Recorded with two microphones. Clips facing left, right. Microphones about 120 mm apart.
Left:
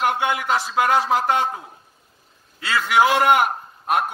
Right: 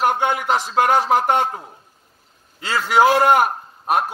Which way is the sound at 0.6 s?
15° right (ahead or behind).